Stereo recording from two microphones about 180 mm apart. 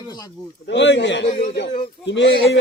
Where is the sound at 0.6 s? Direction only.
80° left.